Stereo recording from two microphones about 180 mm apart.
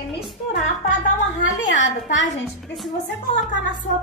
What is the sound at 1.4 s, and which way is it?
Speech, 90° left.